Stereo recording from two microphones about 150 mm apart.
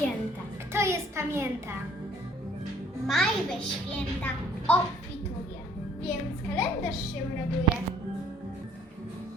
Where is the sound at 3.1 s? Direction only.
Centre (ahead or behind).